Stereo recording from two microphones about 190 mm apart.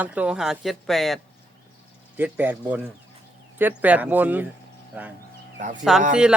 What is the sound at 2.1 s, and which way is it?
Speech, 10° right (ahead or behind).